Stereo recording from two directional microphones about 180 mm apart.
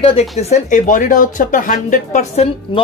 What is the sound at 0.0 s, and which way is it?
Speech, 30° left (ahead or behind).